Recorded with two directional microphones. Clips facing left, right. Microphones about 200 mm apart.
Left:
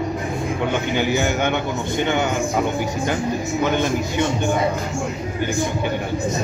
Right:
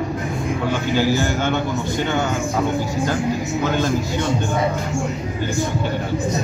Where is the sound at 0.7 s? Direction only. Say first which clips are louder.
Right 3 dB; 20° left (ahead or behind).